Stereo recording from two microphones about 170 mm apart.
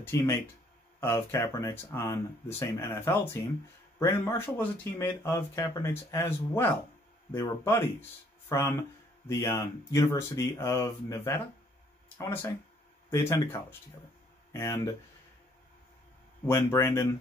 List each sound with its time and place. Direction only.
0.0 s speech: 15° left (ahead or behind)
16.4 s speech: 15° left (ahead or behind)